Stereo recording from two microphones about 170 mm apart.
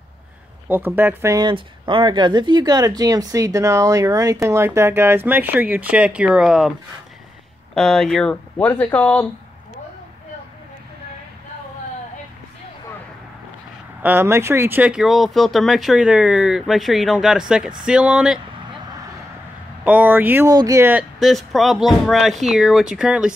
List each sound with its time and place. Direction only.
0.7 s speech: 10° right (ahead or behind)
7.7 s speech: 5° left (ahead or behind)
14.0 s speech: 15° right (ahead or behind)
19.8 s speech: 10° right (ahead or behind)
21.2 s speech: centre (ahead or behind)